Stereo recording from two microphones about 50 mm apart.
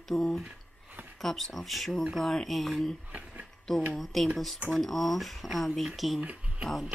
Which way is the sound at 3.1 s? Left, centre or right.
Right.